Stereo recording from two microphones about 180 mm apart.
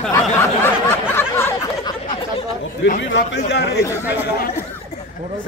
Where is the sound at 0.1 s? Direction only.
15° left (ahead or behind).